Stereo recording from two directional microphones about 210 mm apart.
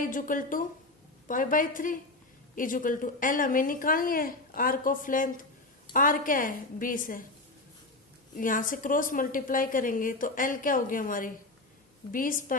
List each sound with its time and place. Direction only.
0.0 s a woman's voice: 40° left (ahead or behind)
8.4 s a woman's voice: 40° left (ahead or behind)